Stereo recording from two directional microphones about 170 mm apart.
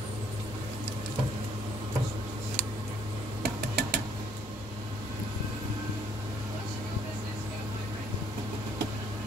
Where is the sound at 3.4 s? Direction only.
70° right (ahead or behind).